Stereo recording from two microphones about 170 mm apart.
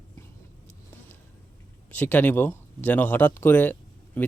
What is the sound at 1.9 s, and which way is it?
Speech, 10° left (ahead or behind).